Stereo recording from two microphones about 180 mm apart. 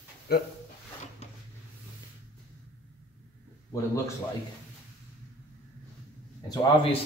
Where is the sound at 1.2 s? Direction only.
35° left (ahead or behind).